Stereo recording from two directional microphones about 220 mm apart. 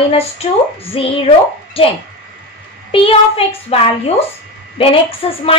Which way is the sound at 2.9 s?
25° left (ahead or behind).